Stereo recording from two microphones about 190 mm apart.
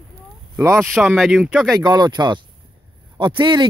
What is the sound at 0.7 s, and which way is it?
Speech, centre (ahead or behind).